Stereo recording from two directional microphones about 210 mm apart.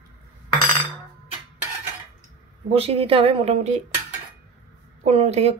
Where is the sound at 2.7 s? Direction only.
25° right (ahead or behind).